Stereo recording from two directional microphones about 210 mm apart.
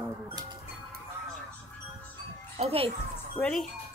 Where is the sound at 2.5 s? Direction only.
30° right (ahead or behind).